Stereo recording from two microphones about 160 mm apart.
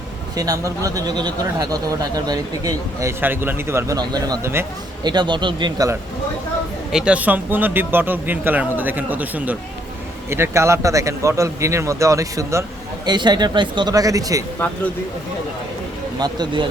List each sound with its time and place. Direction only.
0.3 s speech: 20° right (ahead or behind)
6.9 s speech: 5° right (ahead or behind); by 14.4 s 20° right (ahead or behind)
16.1 s speech: 25° right (ahead or behind)